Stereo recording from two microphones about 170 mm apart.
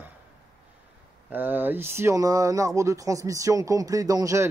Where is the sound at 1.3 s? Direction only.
10° right (ahead or behind).